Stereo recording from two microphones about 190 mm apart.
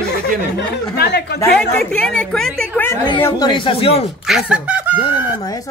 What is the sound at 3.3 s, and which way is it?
Speech, 20° left (ahead or behind).